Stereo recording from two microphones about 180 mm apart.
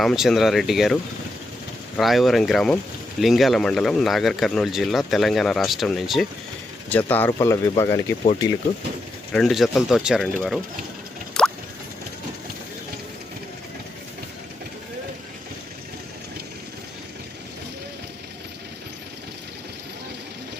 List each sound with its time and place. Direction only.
0.0 s speech: centre (ahead or behind)
2.0 s speech: centre (ahead or behind)
6.9 s speech: 10° left (ahead or behind)
9.3 s speech: centre (ahead or behind)
11.4 s plop: 5° left (ahead or behind)